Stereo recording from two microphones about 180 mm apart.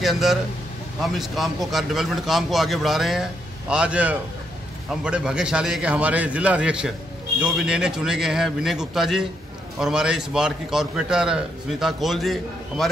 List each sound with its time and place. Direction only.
0.0 s a man's voice: centre (ahead or behind)